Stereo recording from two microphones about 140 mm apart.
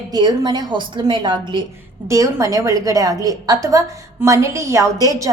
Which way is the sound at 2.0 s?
25° right (ahead or behind).